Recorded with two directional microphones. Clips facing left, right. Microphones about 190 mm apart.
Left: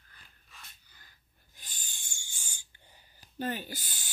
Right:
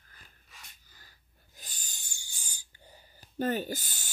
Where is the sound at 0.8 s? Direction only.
45° right (ahead or behind).